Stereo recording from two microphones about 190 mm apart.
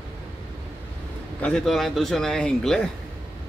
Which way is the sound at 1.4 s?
5° left (ahead or behind).